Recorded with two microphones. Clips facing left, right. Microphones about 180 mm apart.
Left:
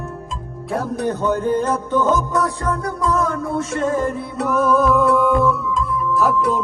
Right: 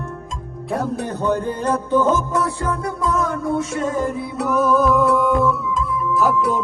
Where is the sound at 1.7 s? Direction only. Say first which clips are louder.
Right 1 dB; 30° right (ahead or behind).